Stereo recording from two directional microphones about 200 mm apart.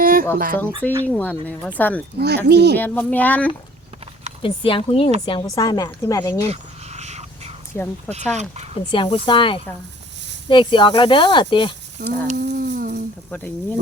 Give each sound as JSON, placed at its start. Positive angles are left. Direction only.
{"t": 0.0, "sound": "a sound", "side_deg": -45}
{"t": 0.3, "sound": "speech", "side_deg": -45}
{"t": 1.0, "sound": "speech", "side_deg": 5}
{"t": 2.1, "sound": "speech", "side_deg": -55}
{"t": 2.7, "sound": "speech", "side_deg": 10}
{"t": 4.4, "sound": "speech", "side_deg": 25}
{"t": 6.4, "sound": "a sound", "side_deg": -35}
{"t": 7.7, "sound": "speech", "side_deg": 10}
{"t": 8.3, "sound": "speech", "side_deg": -35}
{"t": 8.7, "sound": "speech", "side_deg": 25}
{"t": 12.0, "sound": "speech", "side_deg": -55}
{"t": 12.5, "sound": "humming", "side_deg": -55}